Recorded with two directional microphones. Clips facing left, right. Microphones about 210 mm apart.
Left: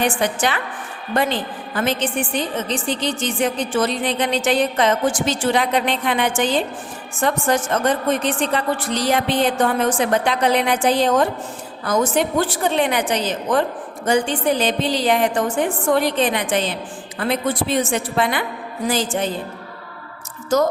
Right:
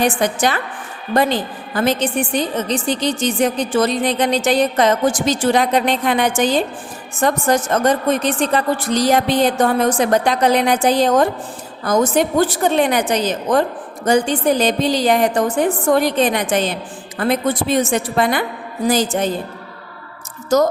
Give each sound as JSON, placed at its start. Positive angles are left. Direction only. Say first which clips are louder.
{"t": 0.0, "sound": "a woman's voice", "louder": "right 3 dB", "side_deg": -40}